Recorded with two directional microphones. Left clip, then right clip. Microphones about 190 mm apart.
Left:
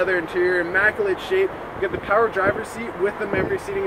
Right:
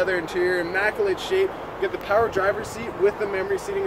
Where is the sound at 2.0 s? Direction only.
25° left (ahead or behind).